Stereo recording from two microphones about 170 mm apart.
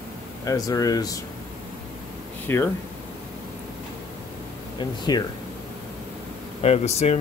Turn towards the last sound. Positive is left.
turn(degrees=40)  # may be behind; listen again after turning